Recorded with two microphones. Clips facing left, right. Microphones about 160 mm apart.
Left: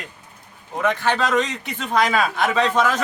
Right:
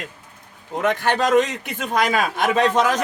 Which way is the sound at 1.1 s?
50° right (ahead or behind).